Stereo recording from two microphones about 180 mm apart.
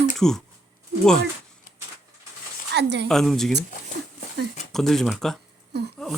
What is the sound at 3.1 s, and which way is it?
Speech, centre (ahead or behind).